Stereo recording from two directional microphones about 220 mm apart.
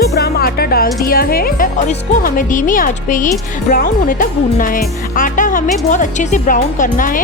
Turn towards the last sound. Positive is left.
turn(degrees=35)  # may be behind; listen again after turning